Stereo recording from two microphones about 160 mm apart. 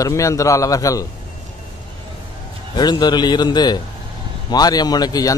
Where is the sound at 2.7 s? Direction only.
25° left (ahead or behind).